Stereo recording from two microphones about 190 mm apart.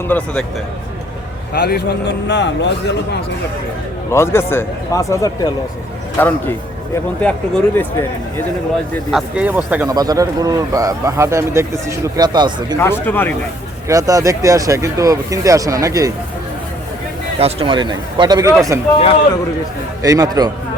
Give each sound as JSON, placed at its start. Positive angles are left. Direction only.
{"t": 0.1, "sound": "speech", "side_deg": 5}
{"t": 1.5, "sound": "a man's voice", "side_deg": 60}
{"t": 4.1, "sound": "speech", "side_deg": 15}
{"t": 9.1, "sound": "speech", "side_deg": -5}
{"t": 9.9, "sound": "speech", "side_deg": -20}
{"t": 12.7, "sound": "speech", "side_deg": 15}
{"t": 13.8, "sound": "speech", "side_deg": -20}
{"t": 17.4, "sound": "speech", "side_deg": -30}
{"t": 20.0, "sound": "speech", "side_deg": -20}